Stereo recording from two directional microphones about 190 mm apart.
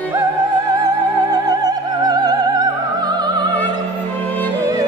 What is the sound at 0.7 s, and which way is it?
Opera, 20° right (ahead or behind).